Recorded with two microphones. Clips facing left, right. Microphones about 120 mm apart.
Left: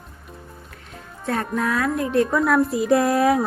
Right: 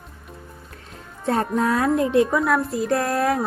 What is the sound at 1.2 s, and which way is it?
Speech, 30° right (ahead or behind).